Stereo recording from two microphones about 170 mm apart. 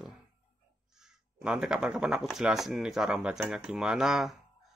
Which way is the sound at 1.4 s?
5° right (ahead or behind).